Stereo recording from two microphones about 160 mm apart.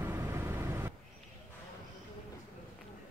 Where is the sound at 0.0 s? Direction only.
15° right (ahead or behind).